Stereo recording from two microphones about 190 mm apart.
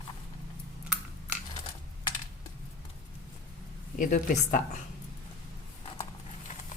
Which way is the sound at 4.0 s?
45° left (ahead or behind).